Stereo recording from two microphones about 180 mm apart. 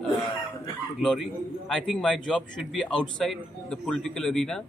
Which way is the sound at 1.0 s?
5° left (ahead or behind).